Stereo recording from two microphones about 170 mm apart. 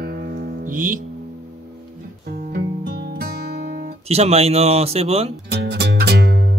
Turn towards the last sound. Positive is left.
turn(degrees=-70)  # may be behind; listen again after turning